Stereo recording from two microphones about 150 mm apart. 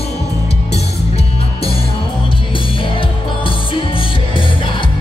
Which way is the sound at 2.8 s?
35° left (ahead or behind).